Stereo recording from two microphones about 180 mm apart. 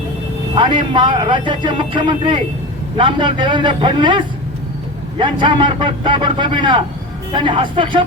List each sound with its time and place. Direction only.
0.5 s a man's voice: 25° right (ahead or behind)